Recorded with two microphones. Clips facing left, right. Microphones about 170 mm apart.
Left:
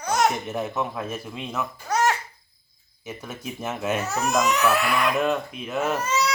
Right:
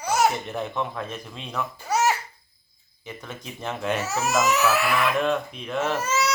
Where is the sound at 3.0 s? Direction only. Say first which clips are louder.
Left 3 dB; 5° left (ahead or behind).